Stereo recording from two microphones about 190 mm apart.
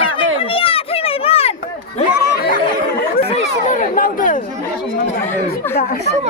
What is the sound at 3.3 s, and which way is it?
Speech, 40° left (ahead or behind).